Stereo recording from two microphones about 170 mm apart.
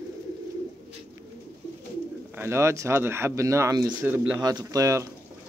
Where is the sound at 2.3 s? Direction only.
15° right (ahead or behind).